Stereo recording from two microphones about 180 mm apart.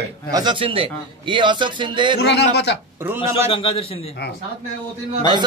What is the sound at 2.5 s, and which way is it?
Speech, 70° left (ahead or behind).